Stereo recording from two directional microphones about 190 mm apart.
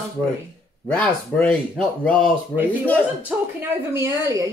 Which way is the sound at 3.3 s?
5° right (ahead or behind).